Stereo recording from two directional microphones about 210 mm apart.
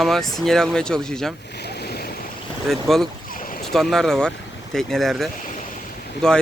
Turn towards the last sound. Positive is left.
turn(degrees=5)  # may be behind; listen again after turning